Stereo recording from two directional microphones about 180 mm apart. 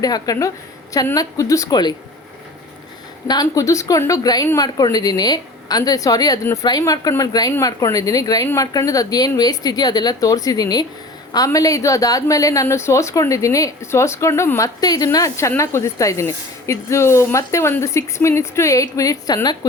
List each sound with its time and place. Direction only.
0.0 s speech: 20° left (ahead or behind)
3.2 s a woman's voice: 20° left (ahead or behind)